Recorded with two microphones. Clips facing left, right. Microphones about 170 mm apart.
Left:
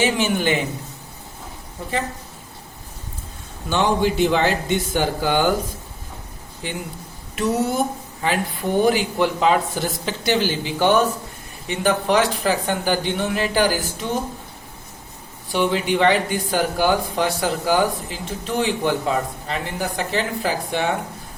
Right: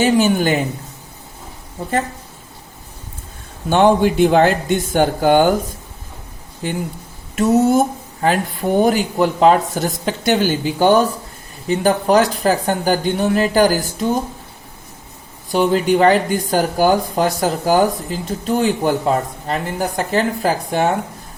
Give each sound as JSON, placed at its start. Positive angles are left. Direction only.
{"t": 0.0, "sound": "speech", "side_deg": -40}
{"t": 3.7, "sound": "speech", "side_deg": -55}
{"t": 6.6, "sound": "speech", "side_deg": -45}
{"t": 7.3, "sound": "a sound", "side_deg": -45}
{"t": 8.8, "sound": "speech", "side_deg": -45}
{"t": 15.5, "sound": "speech", "side_deg": -40}